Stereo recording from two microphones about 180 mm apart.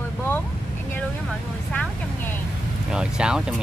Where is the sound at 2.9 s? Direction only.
5° right (ahead or behind).